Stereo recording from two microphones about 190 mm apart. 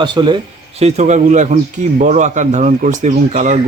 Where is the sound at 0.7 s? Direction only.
35° right (ahead or behind).